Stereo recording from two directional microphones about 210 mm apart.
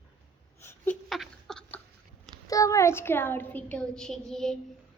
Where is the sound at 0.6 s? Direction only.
10° left (ahead or behind).